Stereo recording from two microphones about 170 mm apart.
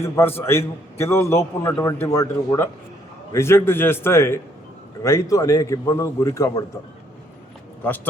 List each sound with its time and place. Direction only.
0.0 s a man's voice: 15° left (ahead or behind)